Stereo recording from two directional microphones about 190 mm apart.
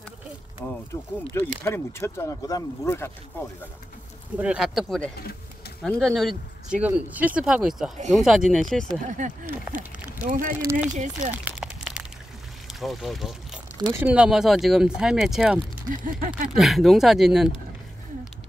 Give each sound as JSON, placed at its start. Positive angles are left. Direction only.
{"t": 0.9, "sound": "speech", "side_deg": 15}
{"t": 4.4, "sound": "speech", "side_deg": -5}
{"t": 10.2, "sound": "a sound", "side_deg": -45}
{"t": 10.6, "sound": "speech", "side_deg": -15}
{"t": 11.0, "sound": "speech", "side_deg": -40}
{"t": 11.3, "sound": "a sound", "side_deg": -5}
{"t": 12.6, "sound": "speech", "side_deg": 0}
{"t": 15.9, "sound": "a sound", "side_deg": -45}
{"t": 16.4, "sound": "speech", "side_deg": 0}